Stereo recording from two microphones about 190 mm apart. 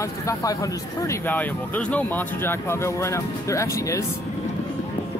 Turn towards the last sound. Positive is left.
turn(degrees=15)  # may be behind; listen again after turning